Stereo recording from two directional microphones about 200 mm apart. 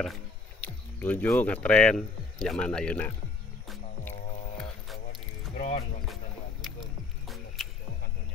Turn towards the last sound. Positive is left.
turn(degrees=0)  # may be behind; listen again after turning